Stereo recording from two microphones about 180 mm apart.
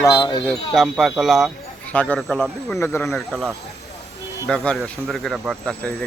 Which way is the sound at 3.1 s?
Centre (ahead or behind).